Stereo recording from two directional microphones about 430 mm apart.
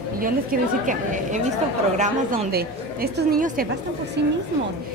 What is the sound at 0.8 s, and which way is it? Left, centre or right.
A woman's voice, centre.